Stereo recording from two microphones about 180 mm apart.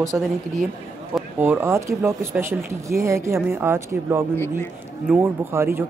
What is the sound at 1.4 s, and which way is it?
Speech, 10° right (ahead or behind).